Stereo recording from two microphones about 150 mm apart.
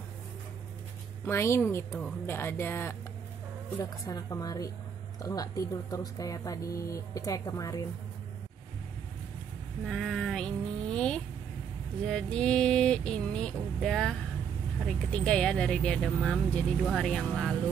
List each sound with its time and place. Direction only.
1.2 s speech: 15° left (ahead or behind)
4.0 s speech: 25° left (ahead or behind)
9.8 s a sound: centre (ahead or behind)
12.1 s mantra: 5° left (ahead or behind)